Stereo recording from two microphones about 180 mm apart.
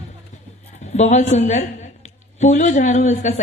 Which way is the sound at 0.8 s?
40° left (ahead or behind).